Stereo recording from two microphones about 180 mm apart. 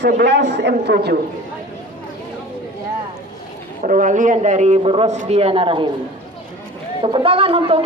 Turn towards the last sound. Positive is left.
turn(degrees=-30)  # may be behind; listen again after turning